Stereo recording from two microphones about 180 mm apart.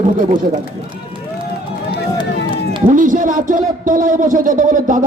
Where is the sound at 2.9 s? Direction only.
45° right (ahead or behind).